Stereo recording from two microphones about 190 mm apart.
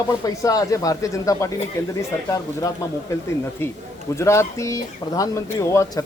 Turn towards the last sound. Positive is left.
turn(degrees=15)  # may be behind; listen again after turning